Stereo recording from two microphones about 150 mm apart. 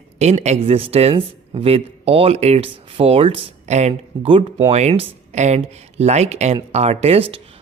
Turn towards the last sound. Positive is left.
turn(degrees=-40)  # may be behind; listen again after turning